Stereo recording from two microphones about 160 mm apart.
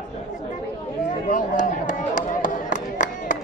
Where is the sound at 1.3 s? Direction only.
50° left (ahead or behind).